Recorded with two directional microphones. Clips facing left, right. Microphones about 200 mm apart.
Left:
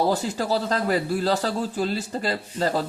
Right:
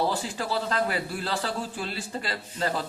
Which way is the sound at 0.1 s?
40° left (ahead or behind).